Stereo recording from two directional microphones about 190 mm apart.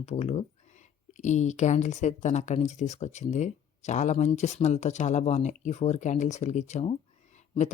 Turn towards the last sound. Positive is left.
turn(degrees=40)  # may be behind; listen again after turning